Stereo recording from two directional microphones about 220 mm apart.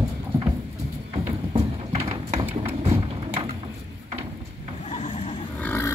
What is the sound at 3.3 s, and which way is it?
Mechanisms, 25° right (ahead or behind).